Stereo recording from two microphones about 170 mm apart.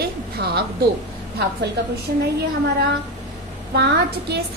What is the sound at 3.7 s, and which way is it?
Speech, 75° right (ahead or behind).